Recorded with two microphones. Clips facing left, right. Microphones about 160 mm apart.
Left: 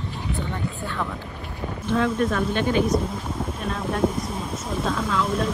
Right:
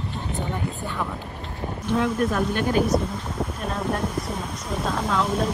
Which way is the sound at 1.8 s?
10° right (ahead or behind).